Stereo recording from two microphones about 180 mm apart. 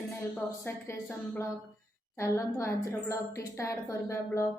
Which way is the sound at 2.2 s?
15° left (ahead or behind).